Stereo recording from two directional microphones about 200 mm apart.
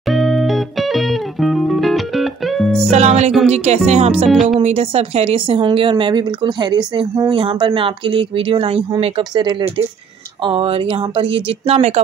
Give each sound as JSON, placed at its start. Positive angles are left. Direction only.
{"t": 0.0, "sound": "music", "side_deg": 0}
{"t": 2.9, "sound": "speech", "side_deg": -35}
{"t": 4.3, "sound": "speech", "side_deg": 0}
{"t": 4.6, "sound": "speech", "side_deg": -30}